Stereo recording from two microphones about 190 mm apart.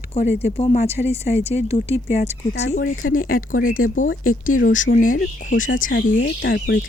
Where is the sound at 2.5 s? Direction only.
65° left (ahead or behind); by 3.0 s 80° left.